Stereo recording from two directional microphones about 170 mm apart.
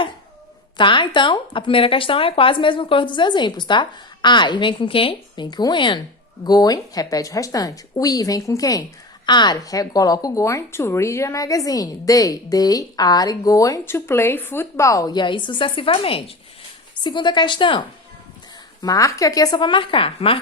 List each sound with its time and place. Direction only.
0.8 s a woman's voice: 30° left (ahead or behind)